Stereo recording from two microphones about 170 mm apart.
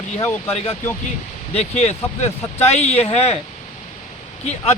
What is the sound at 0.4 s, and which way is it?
Speech, 35° left (ahead or behind).